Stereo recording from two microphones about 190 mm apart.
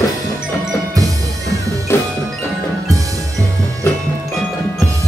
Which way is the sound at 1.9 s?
15° left (ahead or behind).